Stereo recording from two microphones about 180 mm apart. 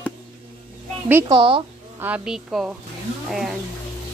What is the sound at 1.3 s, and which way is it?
Speech, 30° right (ahead or behind).